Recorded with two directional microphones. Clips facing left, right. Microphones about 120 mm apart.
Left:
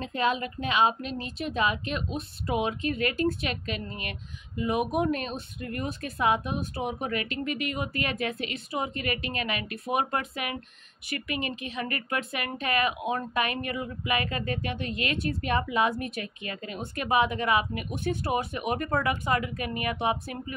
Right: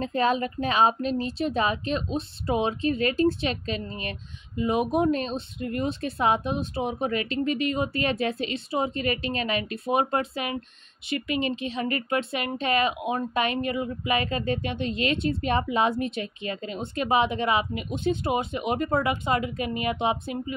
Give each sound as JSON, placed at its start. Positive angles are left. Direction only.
{"t": 0.0, "sound": "a woman's voice", "side_deg": -35}